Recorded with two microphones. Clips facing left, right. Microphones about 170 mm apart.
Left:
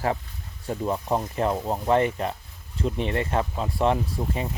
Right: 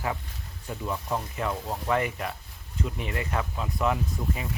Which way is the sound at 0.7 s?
35° left (ahead or behind).